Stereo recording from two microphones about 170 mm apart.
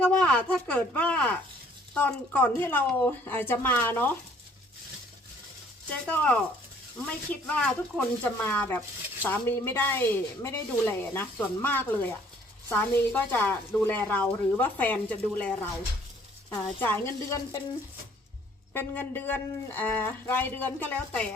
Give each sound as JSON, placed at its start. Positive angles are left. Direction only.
{"t": 0.0, "sound": "speech", "side_deg": 5}
{"t": 5.9, "sound": "speech", "side_deg": 10}
{"t": 18.7, "sound": "speech", "side_deg": 10}